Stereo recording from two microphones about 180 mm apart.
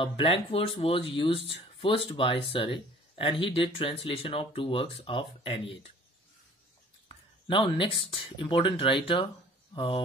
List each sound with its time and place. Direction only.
0.0 s speech: 30° left (ahead or behind)
7.4 s speech: 30° left (ahead or behind)